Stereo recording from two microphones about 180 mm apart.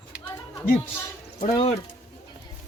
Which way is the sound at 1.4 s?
40° left (ahead or behind).